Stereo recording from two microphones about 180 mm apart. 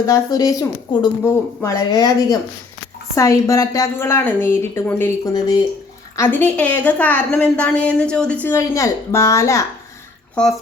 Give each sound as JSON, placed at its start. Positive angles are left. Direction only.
{"t": 0.0, "sound": "a woman's voice", "side_deg": 20}
{"t": 6.1, "sound": "a woman's voice", "side_deg": 10}
{"t": 10.4, "sound": "speech", "side_deg": 5}